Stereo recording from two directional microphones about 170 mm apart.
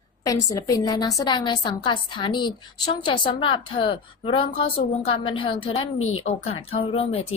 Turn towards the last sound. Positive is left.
turn(degrees=35)  # may be behind; listen again after turning